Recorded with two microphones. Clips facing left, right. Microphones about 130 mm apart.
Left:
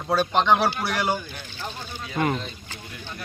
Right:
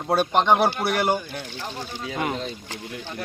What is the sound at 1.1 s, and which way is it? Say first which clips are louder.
Speech: right 3 dB; 65° right (ahead or behind).